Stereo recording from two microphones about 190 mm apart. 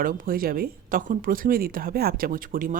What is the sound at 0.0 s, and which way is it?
Speech, 50° right (ahead or behind).